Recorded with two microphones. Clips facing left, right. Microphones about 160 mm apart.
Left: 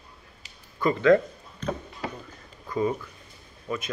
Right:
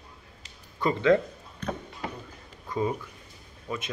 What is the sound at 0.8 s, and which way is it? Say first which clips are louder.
Speech: left 3 dB; 25° right (ahead or behind).